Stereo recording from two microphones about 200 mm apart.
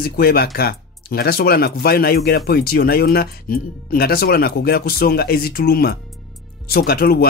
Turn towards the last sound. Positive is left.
turn(degrees=50)  # may be behind; listen again after turning